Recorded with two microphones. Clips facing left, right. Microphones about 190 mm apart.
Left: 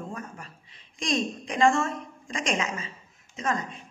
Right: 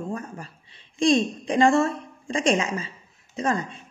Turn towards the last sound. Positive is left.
turn(degrees=-35)  # may be behind; listen again after turning